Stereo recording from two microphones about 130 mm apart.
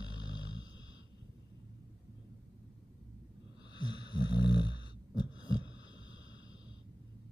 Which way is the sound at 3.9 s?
35° left (ahead or behind).